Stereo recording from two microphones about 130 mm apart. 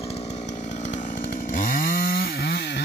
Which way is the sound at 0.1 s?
60° left (ahead or behind).